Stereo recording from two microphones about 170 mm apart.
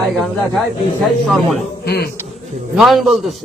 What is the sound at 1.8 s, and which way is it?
Speech, 70° left (ahead or behind).